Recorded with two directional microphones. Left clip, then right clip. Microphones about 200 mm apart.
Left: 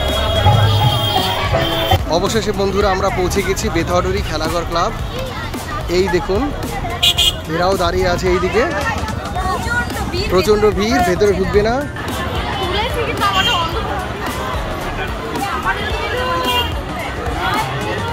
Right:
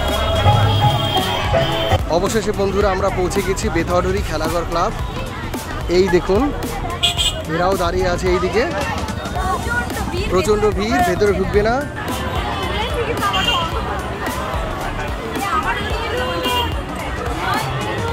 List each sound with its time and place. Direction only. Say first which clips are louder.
2.0 s speech: left 1 dB; 5° right (ahead or behind)
5.9 s speech: right 1 dB; 25° right (ahead or behind)
7.6 s speech: left 2 dB; centre (ahead or behind)
10.3 s speech: left 3 dB; 5° left (ahead or behind)